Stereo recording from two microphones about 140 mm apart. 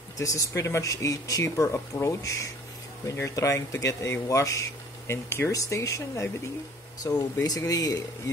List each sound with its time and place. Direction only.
0.2 s speech: 25° left (ahead or behind)